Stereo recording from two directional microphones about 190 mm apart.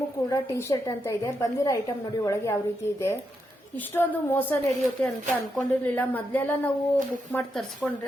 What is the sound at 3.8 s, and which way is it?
A woman's voice, 10° left (ahead or behind).